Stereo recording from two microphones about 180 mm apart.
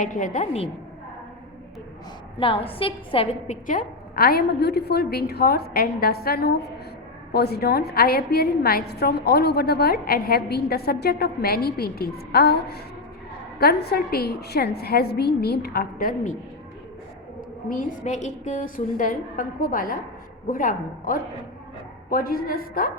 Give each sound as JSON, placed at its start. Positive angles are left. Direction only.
{"t": 0.0, "sound": "a woman's voice", "side_deg": 45}
{"t": 2.4, "sound": "a woman's voice", "side_deg": 30}
{"t": 17.7, "sound": "a woman's voice", "side_deg": 45}